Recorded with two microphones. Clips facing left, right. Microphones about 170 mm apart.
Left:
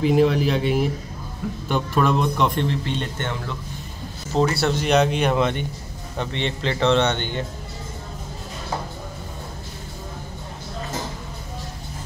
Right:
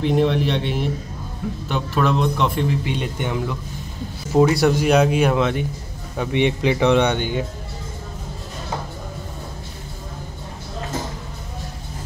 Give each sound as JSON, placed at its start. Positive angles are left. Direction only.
{"t": 0.0, "sound": "speech", "side_deg": 5}
{"t": 6.1, "sound": "speech", "side_deg": -15}